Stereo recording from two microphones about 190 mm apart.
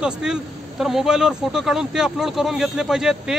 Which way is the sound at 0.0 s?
5° right (ahead or behind).